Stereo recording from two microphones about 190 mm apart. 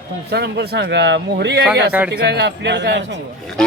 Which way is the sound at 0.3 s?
60° right (ahead or behind).